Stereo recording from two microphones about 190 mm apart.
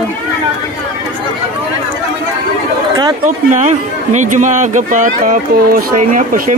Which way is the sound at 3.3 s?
40° right (ahead or behind).